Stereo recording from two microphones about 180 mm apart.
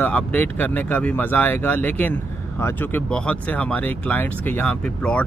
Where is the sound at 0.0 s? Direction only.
10° left (ahead or behind).